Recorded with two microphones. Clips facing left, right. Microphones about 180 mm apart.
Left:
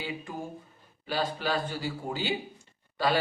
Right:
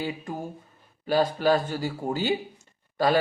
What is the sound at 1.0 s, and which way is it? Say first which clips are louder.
Speech: right 8 dB; 45° right (ahead or behind).